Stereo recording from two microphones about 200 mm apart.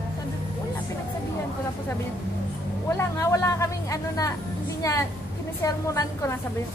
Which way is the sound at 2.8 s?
15° left (ahead or behind).